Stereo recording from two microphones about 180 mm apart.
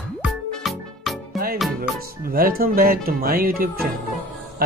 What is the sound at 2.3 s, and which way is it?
Speech, 55° right (ahead or behind).